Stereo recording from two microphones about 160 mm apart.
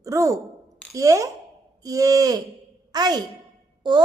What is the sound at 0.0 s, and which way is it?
A woman's voice, 20° right (ahead or behind).